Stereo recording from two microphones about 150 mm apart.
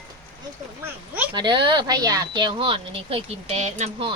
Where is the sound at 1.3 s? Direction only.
30° right (ahead or behind).